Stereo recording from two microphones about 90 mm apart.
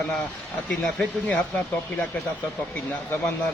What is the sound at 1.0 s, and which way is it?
Speech, 15° left (ahead or behind).